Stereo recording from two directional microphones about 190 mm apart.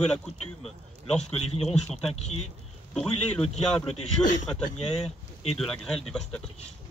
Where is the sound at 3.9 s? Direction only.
40° left (ahead or behind).